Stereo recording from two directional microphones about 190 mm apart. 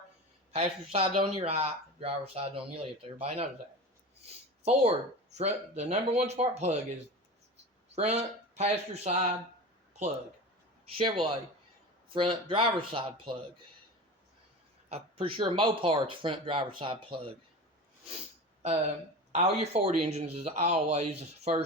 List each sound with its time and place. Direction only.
0.5 s speech: 30° right (ahead or behind)
4.2 s a sound: 35° right (ahead or behind)
5.4 s speech: 35° right (ahead or behind)
7.9 s speech: 35° right (ahead or behind)
10.8 s speech: 30° right (ahead or behind)
14.8 s speech: 30° right (ahead or behind)
19.3 s speech: 35° right (ahead or behind)